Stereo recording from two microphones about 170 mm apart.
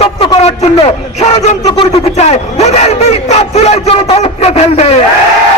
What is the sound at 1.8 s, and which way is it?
Crowd, 40° left (ahead or behind).